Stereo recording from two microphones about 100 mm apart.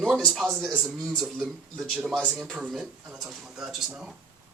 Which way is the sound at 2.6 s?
5° right (ahead or behind).